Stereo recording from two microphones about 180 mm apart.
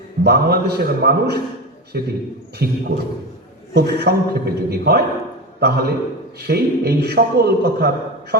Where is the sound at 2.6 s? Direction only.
65° right (ahead or behind).